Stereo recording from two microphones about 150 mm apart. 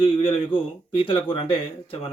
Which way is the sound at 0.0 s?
35° left (ahead or behind).